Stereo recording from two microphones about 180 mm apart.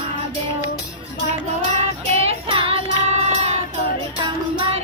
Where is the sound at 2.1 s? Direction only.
35° right (ahead or behind).